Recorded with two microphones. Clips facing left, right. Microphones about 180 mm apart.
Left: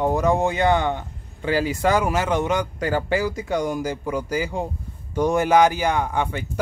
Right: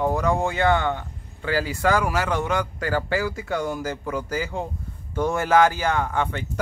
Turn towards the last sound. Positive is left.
turn(degrees=15)  # may be behind; listen again after turning